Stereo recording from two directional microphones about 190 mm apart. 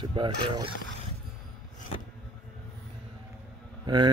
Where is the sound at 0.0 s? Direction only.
25° right (ahead or behind).